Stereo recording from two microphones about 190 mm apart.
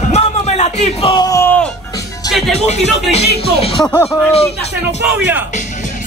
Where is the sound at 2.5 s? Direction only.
35° left (ahead or behind).